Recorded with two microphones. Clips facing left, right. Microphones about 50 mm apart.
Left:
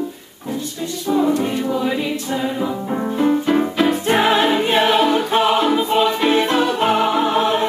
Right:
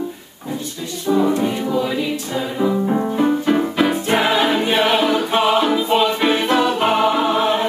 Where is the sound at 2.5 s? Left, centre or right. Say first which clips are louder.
Right 4 dB; centre.